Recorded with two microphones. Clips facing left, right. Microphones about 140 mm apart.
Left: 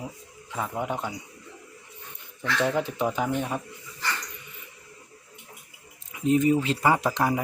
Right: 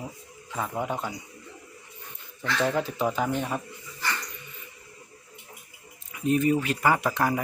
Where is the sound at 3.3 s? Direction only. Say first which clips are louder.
Left 1 dB; 5° left (ahead or behind).